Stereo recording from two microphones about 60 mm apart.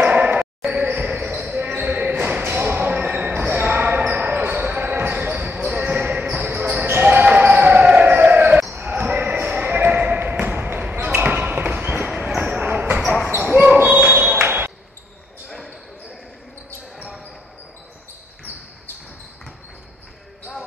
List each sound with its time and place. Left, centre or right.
0.0 s basketball bounce: right
12.1 s basketball bounce: centre
12.4 s basketball bounce: right
13.0 s basketball bounce: centre
13.7 s a sound: right